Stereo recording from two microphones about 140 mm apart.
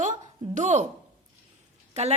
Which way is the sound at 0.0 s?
60° right (ahead or behind).